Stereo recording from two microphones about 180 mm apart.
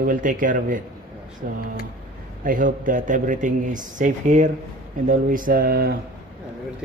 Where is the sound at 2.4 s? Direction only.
50° right (ahead or behind).